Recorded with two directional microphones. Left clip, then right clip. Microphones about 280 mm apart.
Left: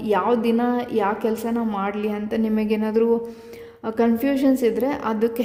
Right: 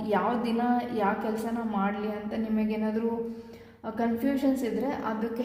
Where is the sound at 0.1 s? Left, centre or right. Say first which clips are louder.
Left 8 dB; left.